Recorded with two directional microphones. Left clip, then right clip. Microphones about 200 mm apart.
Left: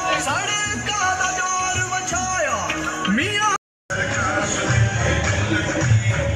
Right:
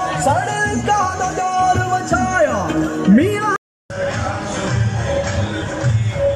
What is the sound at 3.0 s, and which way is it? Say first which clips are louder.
Music: right 7 dB; 35° right (ahead or behind).